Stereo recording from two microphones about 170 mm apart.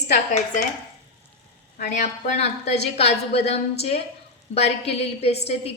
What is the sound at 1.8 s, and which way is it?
A woman's voice, 45° left (ahead or behind).